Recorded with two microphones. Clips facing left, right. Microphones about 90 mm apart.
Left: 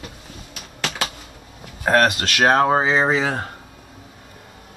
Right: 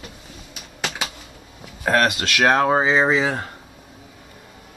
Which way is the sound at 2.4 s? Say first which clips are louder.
Left 1 dB; 25° left (ahead or behind).